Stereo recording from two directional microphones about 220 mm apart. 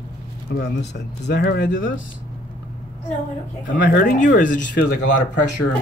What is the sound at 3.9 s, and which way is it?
Speech, 40° left (ahead or behind).